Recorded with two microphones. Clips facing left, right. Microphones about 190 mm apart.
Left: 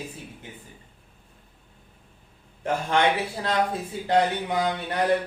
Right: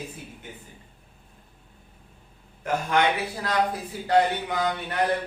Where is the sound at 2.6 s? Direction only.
30° left (ahead or behind).